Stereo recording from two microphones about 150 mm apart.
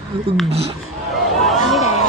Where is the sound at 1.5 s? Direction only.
Centre (ahead or behind).